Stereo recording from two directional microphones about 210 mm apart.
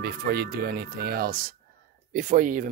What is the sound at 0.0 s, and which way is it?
Speech, 50° right (ahead or behind).